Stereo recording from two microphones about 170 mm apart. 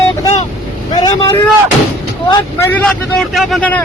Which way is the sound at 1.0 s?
25° left (ahead or behind).